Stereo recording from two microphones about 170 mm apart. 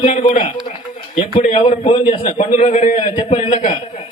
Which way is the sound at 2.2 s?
45° left (ahead or behind).